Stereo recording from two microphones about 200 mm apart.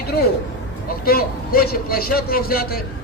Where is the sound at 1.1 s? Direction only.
50° left (ahead or behind).